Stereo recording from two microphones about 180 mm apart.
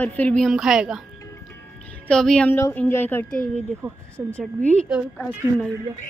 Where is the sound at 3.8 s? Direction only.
15° right (ahead or behind).